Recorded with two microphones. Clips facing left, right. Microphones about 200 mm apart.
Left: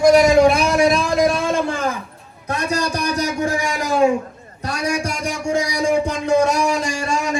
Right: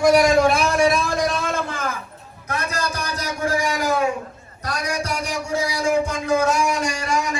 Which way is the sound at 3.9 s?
30° left (ahead or behind).